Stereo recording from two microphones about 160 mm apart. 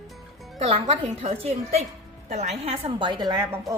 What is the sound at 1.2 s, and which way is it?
A woman's voice, 40° right (ahead or behind).